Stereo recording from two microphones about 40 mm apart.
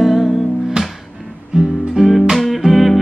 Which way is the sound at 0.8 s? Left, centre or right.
Right.